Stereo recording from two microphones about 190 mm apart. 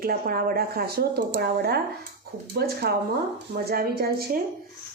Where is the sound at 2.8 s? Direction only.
60° right (ahead or behind).